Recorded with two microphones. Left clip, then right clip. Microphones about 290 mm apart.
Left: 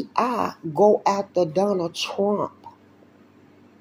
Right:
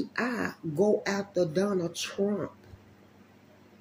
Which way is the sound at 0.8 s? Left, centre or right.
Centre.